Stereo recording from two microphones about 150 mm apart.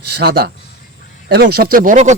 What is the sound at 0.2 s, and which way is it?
Speech, 90° right.